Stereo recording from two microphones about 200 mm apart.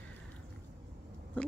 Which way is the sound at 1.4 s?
5° left (ahead or behind).